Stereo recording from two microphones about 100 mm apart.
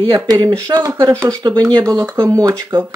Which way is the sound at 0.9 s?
30° right (ahead or behind).